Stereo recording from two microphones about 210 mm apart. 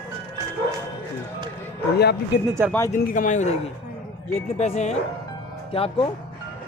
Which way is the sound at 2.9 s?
40° left (ahead or behind).